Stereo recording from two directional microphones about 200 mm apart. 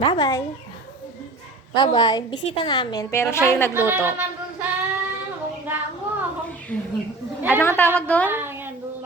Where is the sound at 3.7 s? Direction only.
10° right (ahead or behind).